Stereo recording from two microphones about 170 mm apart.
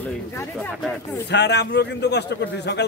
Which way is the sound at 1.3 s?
90° left.